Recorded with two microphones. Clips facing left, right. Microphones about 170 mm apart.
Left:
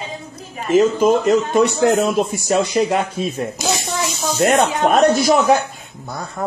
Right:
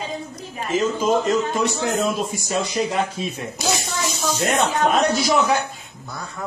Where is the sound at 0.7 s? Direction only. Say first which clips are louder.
Left 6 dB; 60° left (ahead or behind).